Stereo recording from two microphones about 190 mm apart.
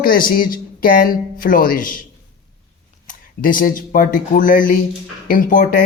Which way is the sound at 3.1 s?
45° left (ahead or behind).